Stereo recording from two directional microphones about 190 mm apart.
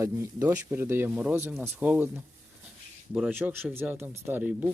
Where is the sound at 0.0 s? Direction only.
15° right (ahead or behind).